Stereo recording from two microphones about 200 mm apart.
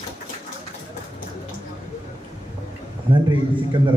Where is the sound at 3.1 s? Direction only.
25° right (ahead or behind).